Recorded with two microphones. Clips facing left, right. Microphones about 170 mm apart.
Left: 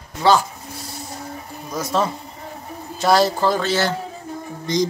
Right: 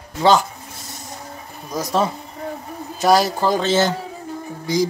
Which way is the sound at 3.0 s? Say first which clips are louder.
Even; 15° right (ahead or behind).